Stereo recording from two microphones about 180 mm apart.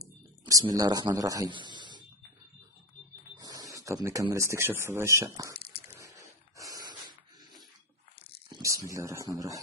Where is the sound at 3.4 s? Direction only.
20° right (ahead or behind).